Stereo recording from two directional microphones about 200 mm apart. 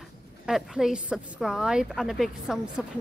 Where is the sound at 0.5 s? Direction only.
Centre (ahead or behind).